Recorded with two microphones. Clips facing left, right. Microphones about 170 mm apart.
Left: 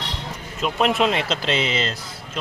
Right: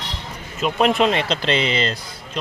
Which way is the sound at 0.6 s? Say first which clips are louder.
Right 2 dB; centre (ahead or behind).